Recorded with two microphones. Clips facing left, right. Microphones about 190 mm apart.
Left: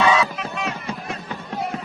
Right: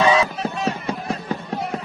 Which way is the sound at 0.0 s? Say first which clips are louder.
Right 1 dB; 30° right (ahead or behind).